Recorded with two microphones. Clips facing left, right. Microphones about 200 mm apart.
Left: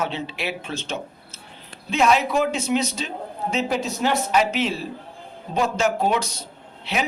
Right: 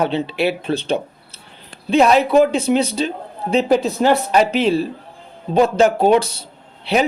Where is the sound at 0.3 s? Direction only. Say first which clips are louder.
Right 10 dB; 35° right (ahead or behind).